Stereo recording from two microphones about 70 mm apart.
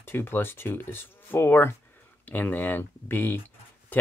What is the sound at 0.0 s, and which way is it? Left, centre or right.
Speech, left.